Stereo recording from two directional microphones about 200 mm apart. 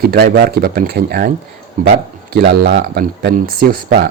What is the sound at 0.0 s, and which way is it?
Speech, 50° right (ahead or behind).